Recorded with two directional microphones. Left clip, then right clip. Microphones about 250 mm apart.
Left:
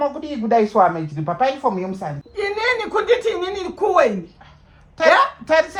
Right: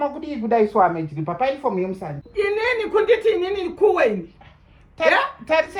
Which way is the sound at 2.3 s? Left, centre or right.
Left.